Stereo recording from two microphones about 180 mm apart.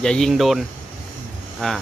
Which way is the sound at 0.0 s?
5° left (ahead or behind).